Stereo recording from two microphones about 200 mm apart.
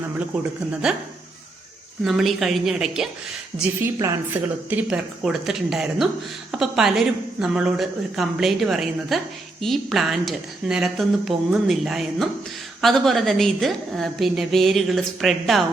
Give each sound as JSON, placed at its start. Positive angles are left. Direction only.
{"t": 0.3, "sound": "a woman's voice", "side_deg": -5}
{"t": 2.0, "sound": "a woman's voice", "side_deg": 0}